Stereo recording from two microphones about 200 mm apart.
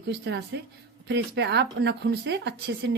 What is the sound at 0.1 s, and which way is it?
A woman's voice, 55° right (ahead or behind).